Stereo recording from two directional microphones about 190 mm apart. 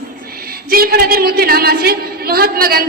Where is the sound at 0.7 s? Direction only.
50° right (ahead or behind).